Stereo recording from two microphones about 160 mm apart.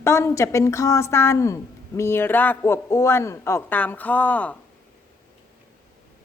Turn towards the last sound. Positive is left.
turn(degrees=10)  # may be behind; listen again after turning